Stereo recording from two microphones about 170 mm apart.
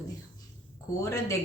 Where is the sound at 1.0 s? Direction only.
20° left (ahead or behind).